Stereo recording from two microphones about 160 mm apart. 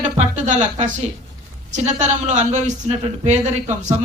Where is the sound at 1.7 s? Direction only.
50° right (ahead or behind).